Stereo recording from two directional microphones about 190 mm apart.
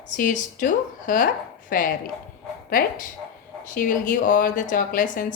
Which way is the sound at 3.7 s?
45° left (ahead or behind).